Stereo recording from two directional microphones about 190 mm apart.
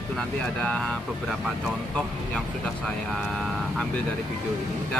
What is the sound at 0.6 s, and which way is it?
Speech, 5° left (ahead or behind).